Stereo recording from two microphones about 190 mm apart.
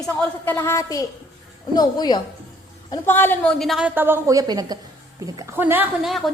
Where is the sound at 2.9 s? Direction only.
10° left (ahead or behind).